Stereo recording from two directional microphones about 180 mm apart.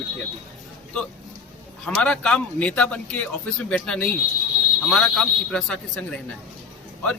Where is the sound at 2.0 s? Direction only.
5° left (ahead or behind).